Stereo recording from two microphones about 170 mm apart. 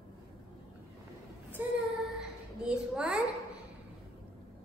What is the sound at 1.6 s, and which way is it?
Female singing, 10° right (ahead or behind).